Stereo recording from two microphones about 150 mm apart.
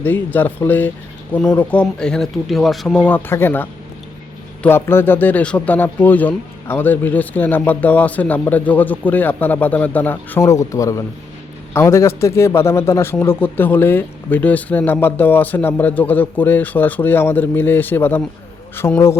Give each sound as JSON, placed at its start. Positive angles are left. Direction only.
{"t": 0.0, "sound": "a man's voice", "side_deg": 10}